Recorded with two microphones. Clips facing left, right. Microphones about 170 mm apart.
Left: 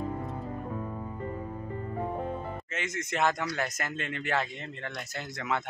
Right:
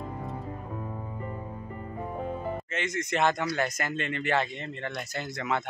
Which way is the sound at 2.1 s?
5° right (ahead or behind).